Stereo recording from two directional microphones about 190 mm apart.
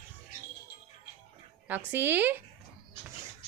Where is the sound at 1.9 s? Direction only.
10° right (ahead or behind).